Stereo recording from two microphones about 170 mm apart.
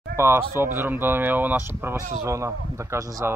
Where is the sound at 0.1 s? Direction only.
15° right (ahead or behind).